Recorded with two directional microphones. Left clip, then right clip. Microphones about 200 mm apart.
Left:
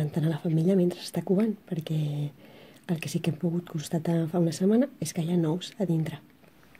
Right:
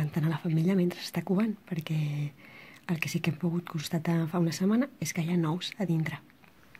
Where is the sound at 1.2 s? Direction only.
30° right (ahead or behind).